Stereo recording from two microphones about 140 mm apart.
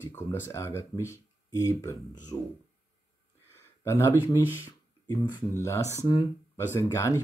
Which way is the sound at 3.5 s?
20° left (ahead or behind).